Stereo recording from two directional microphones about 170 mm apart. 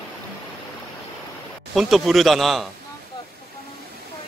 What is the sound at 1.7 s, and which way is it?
Speech, centre (ahead or behind).